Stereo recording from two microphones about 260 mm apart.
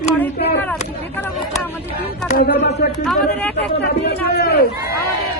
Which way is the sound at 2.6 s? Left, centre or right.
Left.